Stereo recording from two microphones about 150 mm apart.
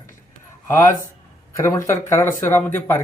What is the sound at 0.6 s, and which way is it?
Speech, 15° left (ahead or behind).